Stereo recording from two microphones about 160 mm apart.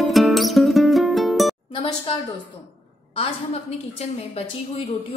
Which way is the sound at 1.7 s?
35° left (ahead or behind).